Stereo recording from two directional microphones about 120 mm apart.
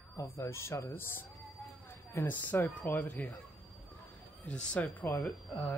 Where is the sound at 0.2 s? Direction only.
25° left (ahead or behind).